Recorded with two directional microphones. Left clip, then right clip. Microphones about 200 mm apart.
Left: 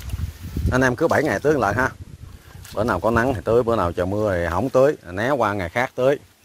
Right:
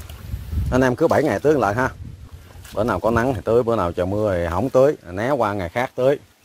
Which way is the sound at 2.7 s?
5° right (ahead or behind).